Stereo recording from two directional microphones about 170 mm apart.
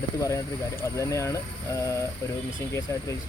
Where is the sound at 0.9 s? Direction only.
15° left (ahead or behind).